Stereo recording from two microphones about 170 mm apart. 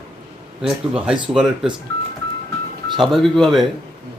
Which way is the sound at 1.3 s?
5° right (ahead or behind).